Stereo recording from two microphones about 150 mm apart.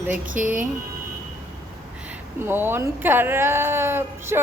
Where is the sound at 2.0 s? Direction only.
10° right (ahead or behind).